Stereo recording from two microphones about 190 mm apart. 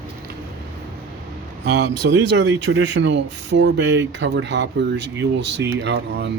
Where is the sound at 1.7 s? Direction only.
60° right (ahead or behind).